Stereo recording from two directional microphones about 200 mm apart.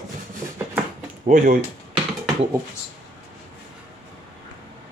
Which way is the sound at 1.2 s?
45° right (ahead or behind).